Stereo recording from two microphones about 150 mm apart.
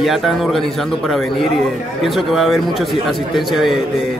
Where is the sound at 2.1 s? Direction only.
Centre (ahead or behind).